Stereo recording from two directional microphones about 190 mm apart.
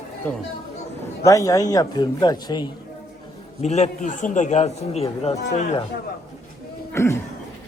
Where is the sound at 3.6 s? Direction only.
35° left (ahead or behind).